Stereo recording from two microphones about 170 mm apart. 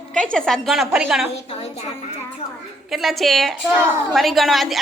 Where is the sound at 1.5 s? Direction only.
40° left (ahead or behind).